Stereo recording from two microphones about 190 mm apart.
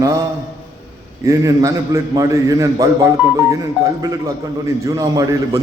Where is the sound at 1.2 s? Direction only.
15° right (ahead or behind).